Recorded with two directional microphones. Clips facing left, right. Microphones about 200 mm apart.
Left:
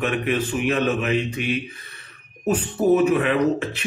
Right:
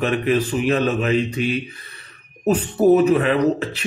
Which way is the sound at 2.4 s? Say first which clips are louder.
Right 4 dB; 35° right (ahead or behind).